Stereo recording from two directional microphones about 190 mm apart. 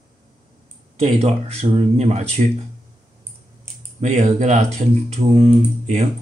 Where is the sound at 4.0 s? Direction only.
40° right (ahead or behind).